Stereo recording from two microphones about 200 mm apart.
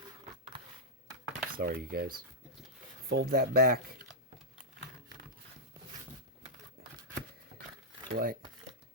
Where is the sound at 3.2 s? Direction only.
50° right (ahead or behind).